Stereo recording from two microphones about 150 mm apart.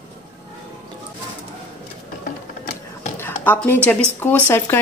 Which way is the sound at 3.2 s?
10° left (ahead or behind).